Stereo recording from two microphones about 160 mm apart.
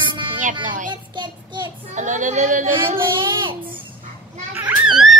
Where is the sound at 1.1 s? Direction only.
30° right (ahead or behind).